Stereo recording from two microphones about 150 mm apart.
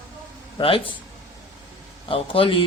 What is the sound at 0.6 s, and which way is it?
Speech, 35° left (ahead or behind).